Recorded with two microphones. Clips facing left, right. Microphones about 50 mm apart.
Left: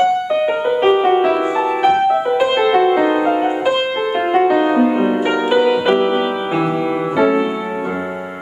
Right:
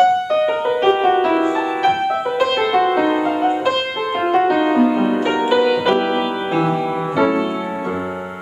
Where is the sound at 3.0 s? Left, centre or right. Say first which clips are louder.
Left 2 dB; centre.